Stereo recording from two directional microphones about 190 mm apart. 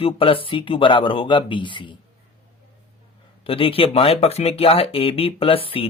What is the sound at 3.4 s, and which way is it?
Speech, 30° left (ahead or behind).